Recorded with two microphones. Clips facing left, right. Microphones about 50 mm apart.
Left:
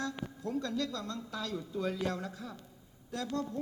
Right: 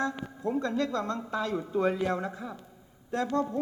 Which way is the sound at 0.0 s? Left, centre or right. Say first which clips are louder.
Right 7 dB; right.